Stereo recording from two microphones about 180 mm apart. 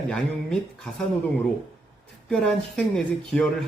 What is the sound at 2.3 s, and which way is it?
Speech, 5° left (ahead or behind).